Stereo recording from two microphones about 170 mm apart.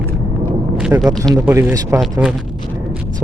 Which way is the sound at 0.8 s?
5° right (ahead or behind).